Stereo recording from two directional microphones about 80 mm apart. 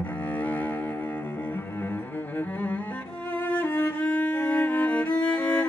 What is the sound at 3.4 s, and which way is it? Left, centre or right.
Music, left.